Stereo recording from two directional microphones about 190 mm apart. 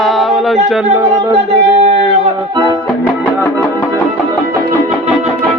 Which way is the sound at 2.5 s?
25° right (ahead or behind).